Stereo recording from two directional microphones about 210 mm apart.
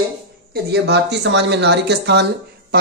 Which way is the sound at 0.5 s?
50° right (ahead or behind).